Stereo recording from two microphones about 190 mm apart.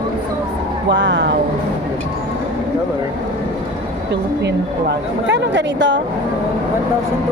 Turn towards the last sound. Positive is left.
turn(degrees=-70)  # may be behind; listen again after turning